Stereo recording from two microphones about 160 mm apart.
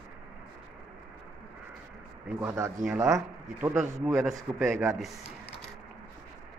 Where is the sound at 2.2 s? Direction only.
15° right (ahead or behind).